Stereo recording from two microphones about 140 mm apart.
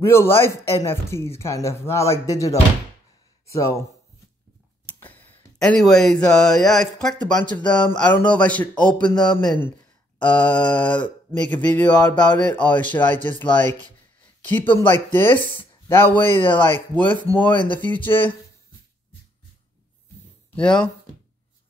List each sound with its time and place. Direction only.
0.0 s speech: 20° left (ahead or behind)
4.8 s speech: 15° left (ahead or behind)
20.5 s speech: 10° left (ahead or behind)